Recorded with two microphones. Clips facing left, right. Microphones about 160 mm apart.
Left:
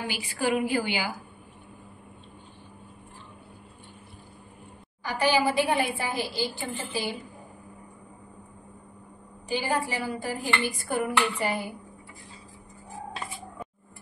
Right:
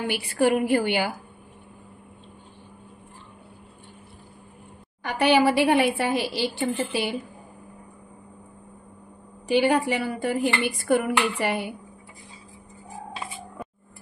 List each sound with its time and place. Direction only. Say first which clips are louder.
0.3 s a woman's voice: right 5 dB; 60° right (ahead or behind)
5.0 s dishes: right 5 dB; 65° right (ahead or behind)
9.5 s dishes: right 8 dB; 70° right (ahead or behind)